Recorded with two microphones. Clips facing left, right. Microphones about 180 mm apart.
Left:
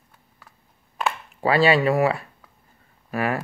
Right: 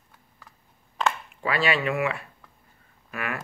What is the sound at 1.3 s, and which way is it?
Speech, 35° left (ahead or behind).